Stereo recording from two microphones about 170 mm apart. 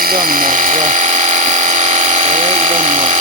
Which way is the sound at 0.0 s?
60° right (ahead or behind).